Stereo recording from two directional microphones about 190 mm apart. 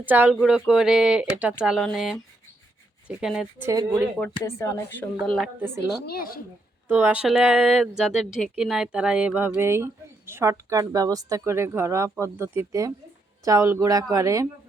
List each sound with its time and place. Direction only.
0.0 s speech: 10° right (ahead or behind)
3.7 s speech: 15° right (ahead or behind)
4.4 s speech: 15° left (ahead or behind)
5.5 s speech: 10° right (ahead or behind)
6.1 s speech: 50° left (ahead or behind)
6.8 s speech: 10° right (ahead or behind)